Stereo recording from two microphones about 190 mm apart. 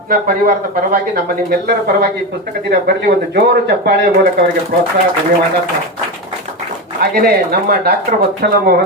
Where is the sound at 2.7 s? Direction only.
60° right (ahead or behind).